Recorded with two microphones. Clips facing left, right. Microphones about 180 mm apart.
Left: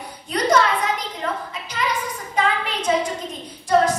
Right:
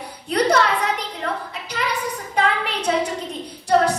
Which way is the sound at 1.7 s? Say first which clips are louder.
Even; 65° right (ahead or behind).